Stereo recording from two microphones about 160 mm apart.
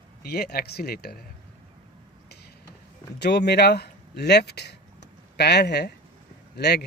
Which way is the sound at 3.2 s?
90° left.